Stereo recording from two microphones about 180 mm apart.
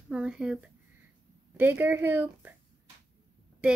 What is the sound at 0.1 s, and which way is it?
Speech, 5° right (ahead or behind).